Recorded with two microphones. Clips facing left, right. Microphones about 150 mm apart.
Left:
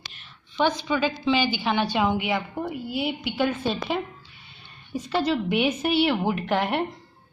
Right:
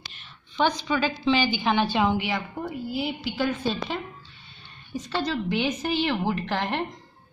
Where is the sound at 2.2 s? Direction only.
20° left (ahead or behind).